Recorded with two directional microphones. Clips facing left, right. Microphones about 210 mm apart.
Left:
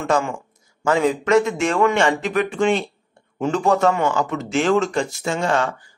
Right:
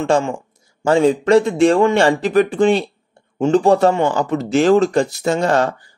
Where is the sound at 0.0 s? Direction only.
30° right (ahead or behind).